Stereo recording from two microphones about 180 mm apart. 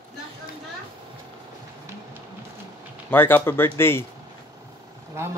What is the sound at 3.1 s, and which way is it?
Speech, 10° left (ahead or behind).